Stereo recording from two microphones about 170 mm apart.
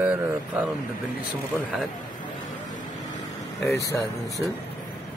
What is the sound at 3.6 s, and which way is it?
Speech, 15° left (ahead or behind).